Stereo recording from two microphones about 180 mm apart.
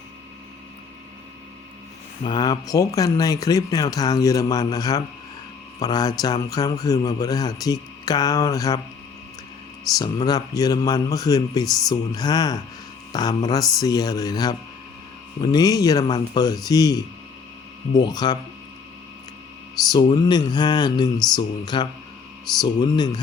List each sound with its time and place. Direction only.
2.2 s a man's voice: 25° left (ahead or behind)
10.0 s a man's voice: 25° left (ahead or behind)
19.9 s a man's voice: 25° left (ahead or behind)